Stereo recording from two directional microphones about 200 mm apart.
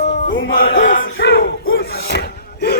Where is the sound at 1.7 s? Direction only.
55° left (ahead or behind).